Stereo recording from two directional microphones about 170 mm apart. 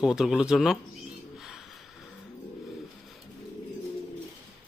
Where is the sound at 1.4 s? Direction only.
Centre (ahead or behind).